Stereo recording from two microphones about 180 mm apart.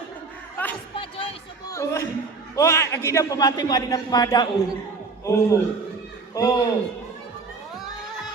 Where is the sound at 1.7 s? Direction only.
15° left (ahead or behind).